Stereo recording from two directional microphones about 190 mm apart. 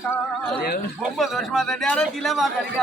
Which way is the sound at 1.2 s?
Centre (ahead or behind).